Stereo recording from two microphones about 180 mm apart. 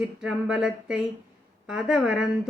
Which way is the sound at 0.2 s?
5° right (ahead or behind).